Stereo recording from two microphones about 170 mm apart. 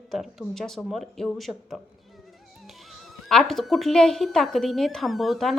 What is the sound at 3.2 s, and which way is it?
A woman's voice, centre (ahead or behind).